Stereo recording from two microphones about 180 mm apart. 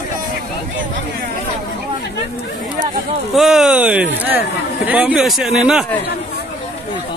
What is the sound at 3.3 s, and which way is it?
Speech, centre (ahead or behind).